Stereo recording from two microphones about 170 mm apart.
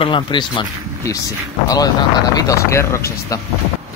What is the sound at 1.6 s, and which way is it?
Speech, 20° left (ahead or behind).